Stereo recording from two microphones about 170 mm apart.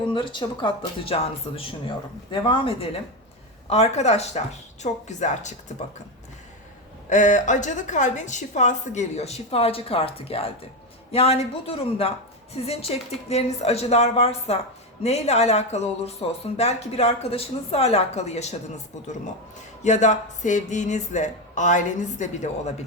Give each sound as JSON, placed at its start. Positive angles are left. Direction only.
{"t": 0.1, "sound": "a woman's voice", "side_deg": 30}
{"t": 7.1, "sound": "a woman's voice", "side_deg": 45}